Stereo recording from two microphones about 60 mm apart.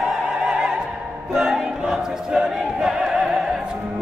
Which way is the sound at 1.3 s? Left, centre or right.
Centre.